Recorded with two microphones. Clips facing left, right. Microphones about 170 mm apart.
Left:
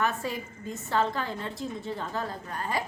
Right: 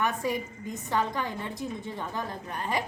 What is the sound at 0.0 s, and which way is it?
A woman's voice, 15° right (ahead or behind).